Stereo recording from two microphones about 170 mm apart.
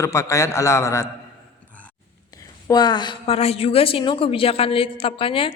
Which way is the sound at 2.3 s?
25° left (ahead or behind).